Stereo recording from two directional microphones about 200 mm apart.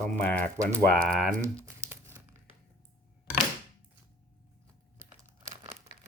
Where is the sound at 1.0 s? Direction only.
45° right (ahead or behind).